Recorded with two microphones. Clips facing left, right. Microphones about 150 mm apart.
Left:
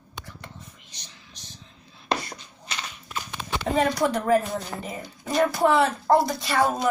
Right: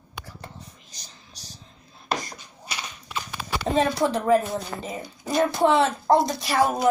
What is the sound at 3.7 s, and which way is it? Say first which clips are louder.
A woman's voice: right 1 dB; 25° right (ahead or behind).